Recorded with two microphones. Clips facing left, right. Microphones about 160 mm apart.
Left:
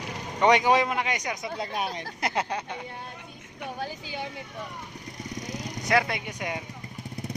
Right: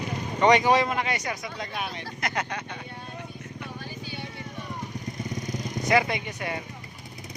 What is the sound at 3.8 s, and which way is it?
Vehicle, 90° left.